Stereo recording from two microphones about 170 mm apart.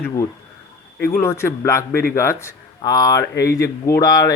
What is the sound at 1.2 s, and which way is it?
Speech, 15° left (ahead or behind).